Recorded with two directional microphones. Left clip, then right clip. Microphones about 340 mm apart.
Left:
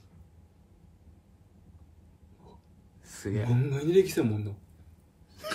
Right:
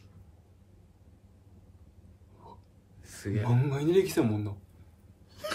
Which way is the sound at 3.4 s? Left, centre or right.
Centre.